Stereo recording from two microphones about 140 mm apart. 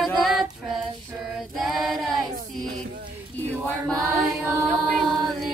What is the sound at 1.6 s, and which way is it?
Choir, centre (ahead or behind).